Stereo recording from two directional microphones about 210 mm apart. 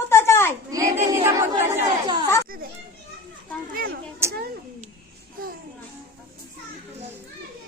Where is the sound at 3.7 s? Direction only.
45° right (ahead or behind).